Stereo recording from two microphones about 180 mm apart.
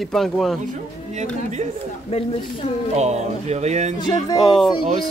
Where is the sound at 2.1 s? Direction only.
35° left (ahead or behind).